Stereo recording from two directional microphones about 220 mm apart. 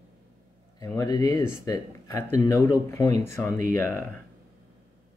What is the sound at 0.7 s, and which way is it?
Speech, 15° left (ahead or behind).